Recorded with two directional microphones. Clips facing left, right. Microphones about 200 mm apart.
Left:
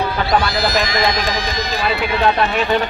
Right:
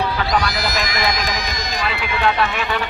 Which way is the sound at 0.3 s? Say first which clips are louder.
Left 3 dB; 30° left (ahead or behind).